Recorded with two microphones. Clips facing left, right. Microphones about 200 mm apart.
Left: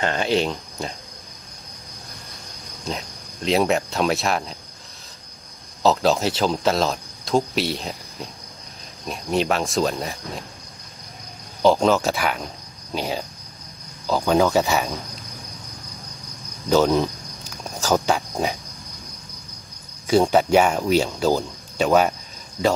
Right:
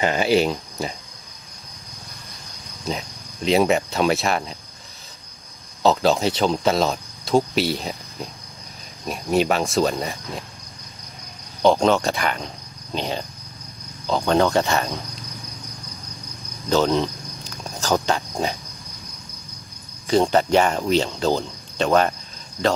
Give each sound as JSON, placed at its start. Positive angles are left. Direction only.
{"t": 0.0, "sound": "speech", "side_deg": -5}
{"t": 2.8, "sound": "speech", "side_deg": 0}
{"t": 5.8, "sound": "speech", "side_deg": 0}
{"t": 11.6, "sound": "speech", "side_deg": 0}
{"t": 16.6, "sound": "speech", "side_deg": 10}
{"t": 20.1, "sound": "speech", "side_deg": 10}